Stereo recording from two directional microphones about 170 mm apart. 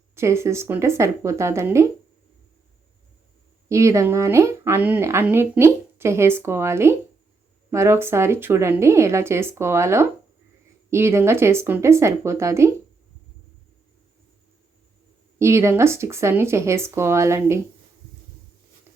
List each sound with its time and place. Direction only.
0.1 s speech: 15° right (ahead or behind)
3.7 s speech: 15° right (ahead or behind)
15.4 s speech: 15° right (ahead or behind)